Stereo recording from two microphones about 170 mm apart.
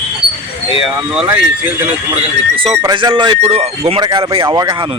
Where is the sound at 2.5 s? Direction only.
30° right (ahead or behind).